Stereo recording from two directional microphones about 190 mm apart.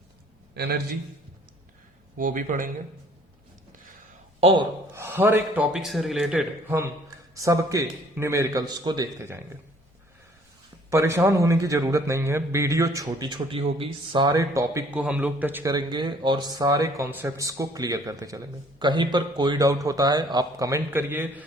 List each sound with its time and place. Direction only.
0.5 s a man's voice: 55° right (ahead or behind)
2.1 s speech: 45° right (ahead or behind)
4.4 s speech: 30° right (ahead or behind)
4.9 s a man's voice: 10° right (ahead or behind)
7.3 s a man's voice: 15° right (ahead or behind)
10.8 s a man's voice: 15° right (ahead or behind)